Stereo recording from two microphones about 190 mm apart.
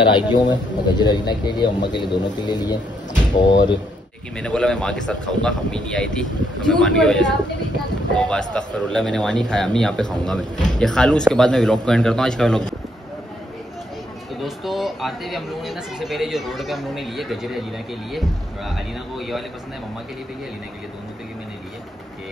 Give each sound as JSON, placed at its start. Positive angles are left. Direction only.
{"t": 0.1, "sound": "speech", "side_deg": 20}
{"t": 4.4, "sound": "speech", "side_deg": 5}
{"t": 14.4, "sound": "speech", "side_deg": 0}